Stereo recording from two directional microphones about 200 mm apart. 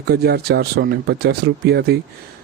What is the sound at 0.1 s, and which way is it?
Speech, 50° right (ahead or behind).